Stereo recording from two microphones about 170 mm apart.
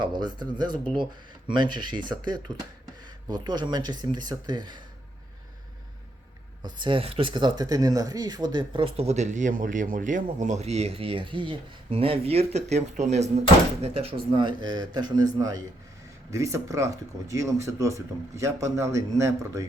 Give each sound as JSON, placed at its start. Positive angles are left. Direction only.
{"t": 0.0, "sound": "speech", "side_deg": -25}
{"t": 6.6, "sound": "speech", "side_deg": -25}